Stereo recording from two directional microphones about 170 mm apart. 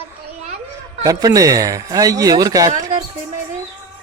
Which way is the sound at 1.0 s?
20° right (ahead or behind).